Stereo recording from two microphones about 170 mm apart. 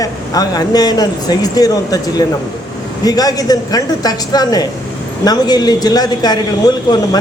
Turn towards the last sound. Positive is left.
turn(degrees=25)  # may be behind; listen again after turning